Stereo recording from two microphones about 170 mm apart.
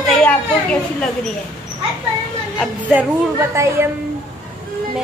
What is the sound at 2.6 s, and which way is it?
A woman's voice, 10° right (ahead or behind).